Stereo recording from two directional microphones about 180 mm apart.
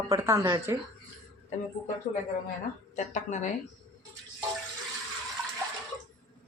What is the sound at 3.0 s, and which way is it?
Speech, 40° left (ahead or behind).